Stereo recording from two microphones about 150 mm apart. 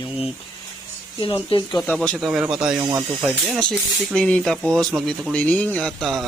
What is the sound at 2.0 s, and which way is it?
Speech, centre (ahead or behind).